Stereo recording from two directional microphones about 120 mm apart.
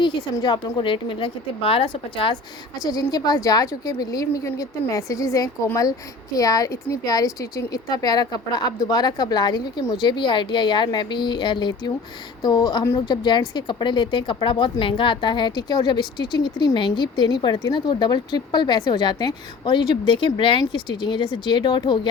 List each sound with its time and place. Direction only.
0.0 s a woman's voice: 40° left (ahead or behind)
2.8 s speech: 30° left (ahead or behind)
13.1 s speech: 40° left (ahead or behind)